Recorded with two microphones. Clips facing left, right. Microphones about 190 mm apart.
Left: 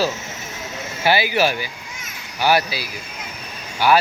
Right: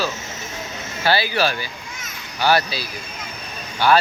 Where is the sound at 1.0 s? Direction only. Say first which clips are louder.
Left 2 dB; 15° left (ahead or behind).